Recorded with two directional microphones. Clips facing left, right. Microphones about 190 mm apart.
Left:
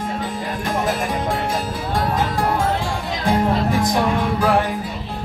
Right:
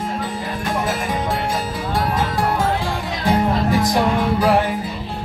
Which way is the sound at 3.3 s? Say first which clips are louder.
Right 1 dB; centre (ahead or behind).